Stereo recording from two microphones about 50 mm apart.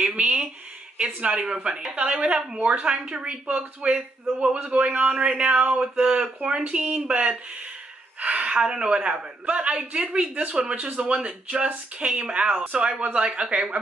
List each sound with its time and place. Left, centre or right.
0.0 s a woman's voice: right